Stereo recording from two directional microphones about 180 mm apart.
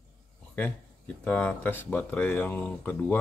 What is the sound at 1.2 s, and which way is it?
Speech, 5° left (ahead or behind).